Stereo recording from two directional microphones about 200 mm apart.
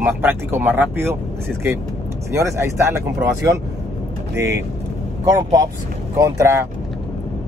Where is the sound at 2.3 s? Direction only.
15° right (ahead or behind).